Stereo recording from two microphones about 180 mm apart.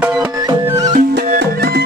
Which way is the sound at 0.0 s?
10° right (ahead or behind).